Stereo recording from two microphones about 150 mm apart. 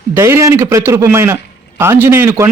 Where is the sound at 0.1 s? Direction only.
20° right (ahead or behind).